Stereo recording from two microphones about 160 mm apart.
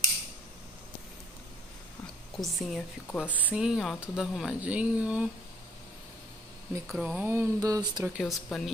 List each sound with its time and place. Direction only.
2.3 s speech: centre (ahead or behind)
3.2 s speech: 10° right (ahead or behind)
6.9 s speech: 5° right (ahead or behind); by 8.0 s 25° right (ahead or behind)
8.2 s speech: 5° left (ahead or behind)